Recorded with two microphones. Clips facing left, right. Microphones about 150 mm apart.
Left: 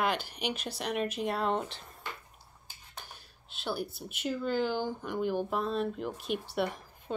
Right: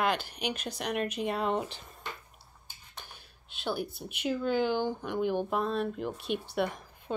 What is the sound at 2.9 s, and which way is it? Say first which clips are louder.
A woman's voice: left 1 dB; 5° left (ahead or behind).